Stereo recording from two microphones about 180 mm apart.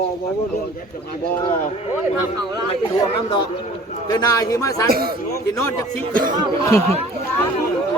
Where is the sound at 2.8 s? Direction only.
30° left (ahead or behind).